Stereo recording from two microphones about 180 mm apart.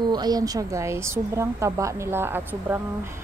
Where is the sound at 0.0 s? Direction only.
25° right (ahead or behind).